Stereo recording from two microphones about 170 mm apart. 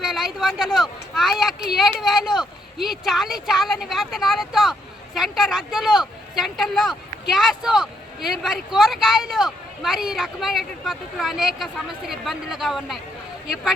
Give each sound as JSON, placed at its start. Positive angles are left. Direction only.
{"t": 0.0, "sound": "a man's voice", "side_deg": 0}